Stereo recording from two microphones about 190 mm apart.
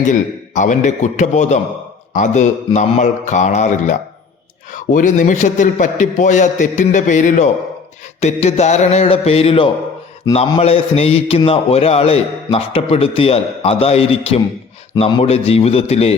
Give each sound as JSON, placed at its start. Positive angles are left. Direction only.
{"t": 0.0, "sound": "a man's voice", "side_deg": 40}